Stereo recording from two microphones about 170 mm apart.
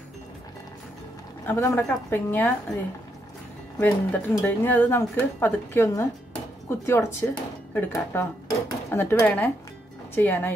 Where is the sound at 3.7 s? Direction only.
10° left (ahead or behind).